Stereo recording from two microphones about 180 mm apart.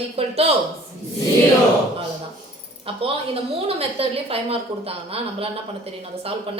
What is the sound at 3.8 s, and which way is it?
A woman's voice, 30° right (ahead or behind).